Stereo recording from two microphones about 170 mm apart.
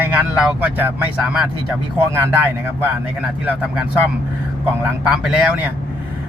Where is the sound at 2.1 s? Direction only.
15° right (ahead or behind).